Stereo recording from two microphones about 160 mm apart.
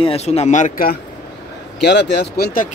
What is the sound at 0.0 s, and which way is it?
Speech, 40° left (ahead or behind).